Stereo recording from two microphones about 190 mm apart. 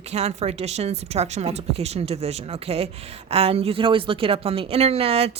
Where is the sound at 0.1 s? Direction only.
35° right (ahead or behind).